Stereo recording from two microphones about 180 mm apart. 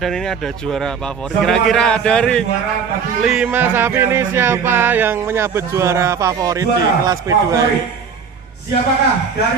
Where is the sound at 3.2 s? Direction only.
5° right (ahead or behind).